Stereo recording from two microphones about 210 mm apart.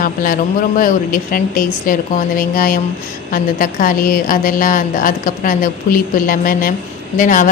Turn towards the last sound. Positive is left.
turn(degrees=40)  # may be behind; listen again after turning